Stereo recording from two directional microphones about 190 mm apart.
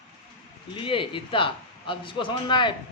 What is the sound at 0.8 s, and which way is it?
A man's voice, 25° left (ahead or behind).